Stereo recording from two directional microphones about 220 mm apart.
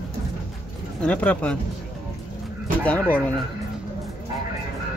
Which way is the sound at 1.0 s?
5° left (ahead or behind).